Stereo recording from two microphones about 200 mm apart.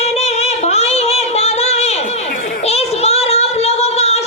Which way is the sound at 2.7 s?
30° left (ahead or behind).